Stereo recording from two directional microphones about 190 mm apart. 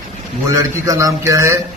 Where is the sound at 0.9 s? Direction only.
15° right (ahead or behind).